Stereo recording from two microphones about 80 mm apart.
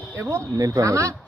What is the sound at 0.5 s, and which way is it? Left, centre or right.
Speech, right.